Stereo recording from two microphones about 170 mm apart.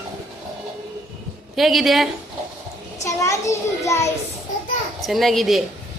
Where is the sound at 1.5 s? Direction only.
Centre (ahead or behind).